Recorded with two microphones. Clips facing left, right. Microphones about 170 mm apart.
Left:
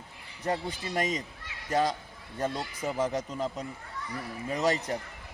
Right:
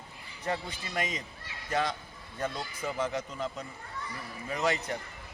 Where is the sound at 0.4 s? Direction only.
35° left (ahead or behind).